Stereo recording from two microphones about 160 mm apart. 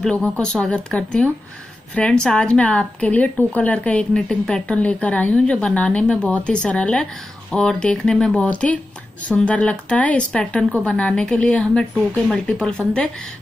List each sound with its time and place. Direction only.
0.0 s a woman's voice: 5° left (ahead or behind)